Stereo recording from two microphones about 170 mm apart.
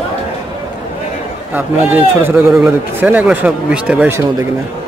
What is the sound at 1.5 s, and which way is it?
Speech, 10° right (ahead or behind).